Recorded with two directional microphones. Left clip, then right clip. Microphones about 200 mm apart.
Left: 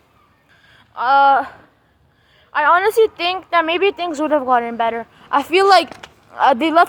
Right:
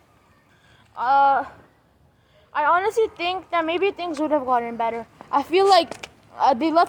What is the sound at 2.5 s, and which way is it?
A woman's voice, 25° left (ahead or behind).